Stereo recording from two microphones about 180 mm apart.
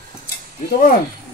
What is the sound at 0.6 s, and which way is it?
Speech, 50° left (ahead or behind).